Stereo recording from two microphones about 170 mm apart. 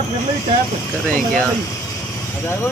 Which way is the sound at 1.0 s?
5° left (ahead or behind).